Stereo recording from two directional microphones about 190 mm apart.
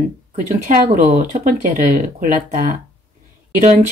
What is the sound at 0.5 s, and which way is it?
Speech, 45° right (ahead or behind).